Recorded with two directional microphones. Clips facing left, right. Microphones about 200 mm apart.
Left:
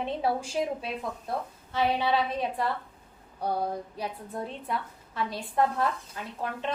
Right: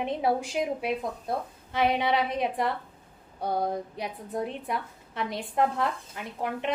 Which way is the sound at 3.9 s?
15° right (ahead or behind).